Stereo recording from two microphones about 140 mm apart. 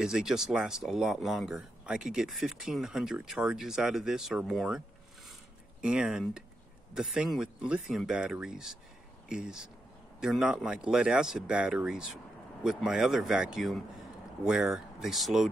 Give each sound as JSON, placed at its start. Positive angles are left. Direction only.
{"t": 0.0, "sound": "speech", "side_deg": -5}
{"t": 5.9, "sound": "speech", "side_deg": -5}